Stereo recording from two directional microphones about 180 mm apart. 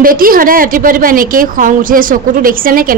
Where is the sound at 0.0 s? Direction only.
50° right (ahead or behind).